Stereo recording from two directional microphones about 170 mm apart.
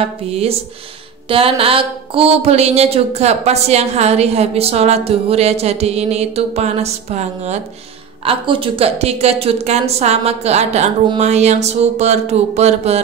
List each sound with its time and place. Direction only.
0.0 s speech: 35° right (ahead or behind)